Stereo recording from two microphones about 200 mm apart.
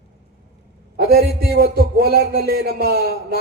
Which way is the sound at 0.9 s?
50° right (ahead or behind).